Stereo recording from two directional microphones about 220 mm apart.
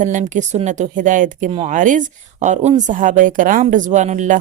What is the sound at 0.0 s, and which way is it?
Speech, 35° right (ahead or behind).